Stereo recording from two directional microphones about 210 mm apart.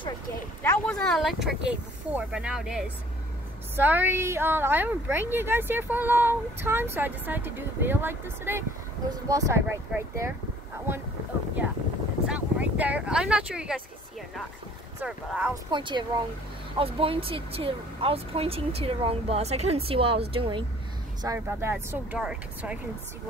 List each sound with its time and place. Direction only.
0.6 s speech: 5° left (ahead or behind); by 10.3 s 15° right (ahead or behind)
12.3 s speech: 5° right (ahead or behind)
15.0 s speech: 5° right (ahead or behind)
15.7 s speech: 20° right (ahead or behind)
21.2 s speech: 15° right (ahead or behind)